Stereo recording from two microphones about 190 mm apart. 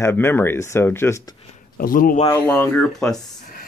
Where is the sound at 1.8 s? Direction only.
50° left (ahead or behind).